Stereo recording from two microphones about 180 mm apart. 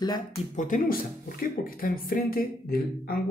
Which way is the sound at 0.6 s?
45° left (ahead or behind).